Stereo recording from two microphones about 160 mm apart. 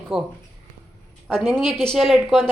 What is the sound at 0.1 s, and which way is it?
Speech, centre (ahead or behind).